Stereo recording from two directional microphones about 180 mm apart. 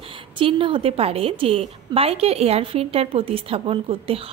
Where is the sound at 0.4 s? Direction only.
30° right (ahead or behind).